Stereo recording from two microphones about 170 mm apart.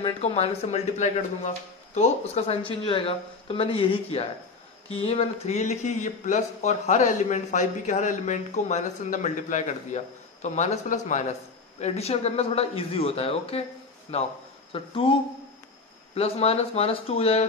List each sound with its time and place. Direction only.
0.0 s speech: 35° left (ahead or behind)
16.2 s speech: 40° left (ahead or behind)